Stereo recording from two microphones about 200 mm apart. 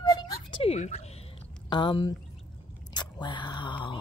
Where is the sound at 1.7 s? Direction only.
20° left (ahead or behind).